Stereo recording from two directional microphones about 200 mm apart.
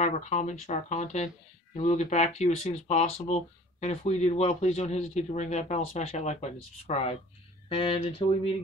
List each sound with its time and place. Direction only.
0.0 s speech: 35° left (ahead or behind)